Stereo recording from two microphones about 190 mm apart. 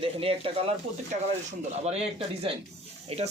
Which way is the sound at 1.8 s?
35° right (ahead or behind).